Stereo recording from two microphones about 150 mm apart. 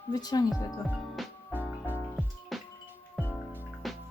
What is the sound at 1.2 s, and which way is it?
Music, centre (ahead or behind).